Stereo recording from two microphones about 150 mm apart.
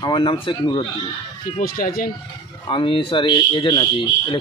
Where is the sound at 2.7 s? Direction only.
35° left (ahead or behind).